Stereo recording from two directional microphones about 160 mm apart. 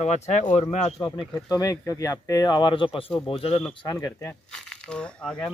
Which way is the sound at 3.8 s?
20° left (ahead or behind).